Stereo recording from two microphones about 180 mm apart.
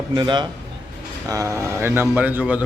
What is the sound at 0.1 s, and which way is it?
A man's voice, 25° right (ahead or behind).